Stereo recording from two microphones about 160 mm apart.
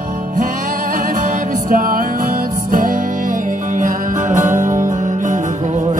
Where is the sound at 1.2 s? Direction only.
55° right (ahead or behind).